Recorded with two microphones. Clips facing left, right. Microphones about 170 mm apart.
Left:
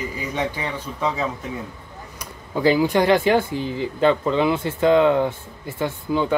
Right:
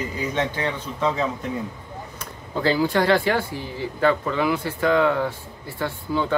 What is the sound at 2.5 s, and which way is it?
Speech, 15° left (ahead or behind).